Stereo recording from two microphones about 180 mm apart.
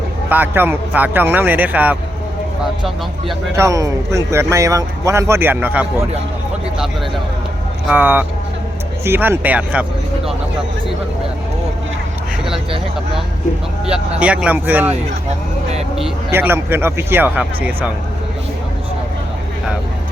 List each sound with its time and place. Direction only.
0.3 s speech: 10° right (ahead or behind)
3.5 s speech: 15° right (ahead or behind)
7.9 s speech: 10° right (ahead or behind)
14.2 s speech: 5° right (ahead or behind)
16.3 s speech: 10° right (ahead or behind)